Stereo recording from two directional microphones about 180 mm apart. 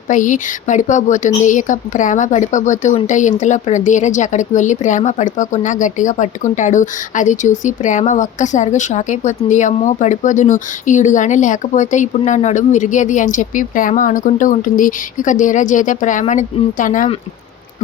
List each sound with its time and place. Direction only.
0.1 s speech: 45° left (ahead or behind)